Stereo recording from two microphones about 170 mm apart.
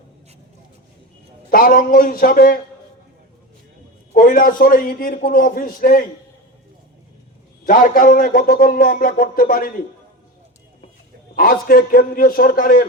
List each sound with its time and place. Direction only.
1.5 s a man's voice: 55° left (ahead or behind)
4.1 s a man's voice: 55° left (ahead or behind)
7.6 s a man's voice: 55° left (ahead or behind)
11.3 s a man's voice: 60° left (ahead or behind)